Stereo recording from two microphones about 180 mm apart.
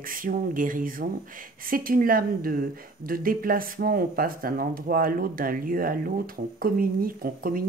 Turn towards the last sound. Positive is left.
turn(degrees=-50)  # may be behind; listen again after turning